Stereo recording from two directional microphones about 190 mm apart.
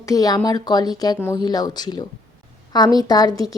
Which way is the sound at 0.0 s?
20° left (ahead or behind).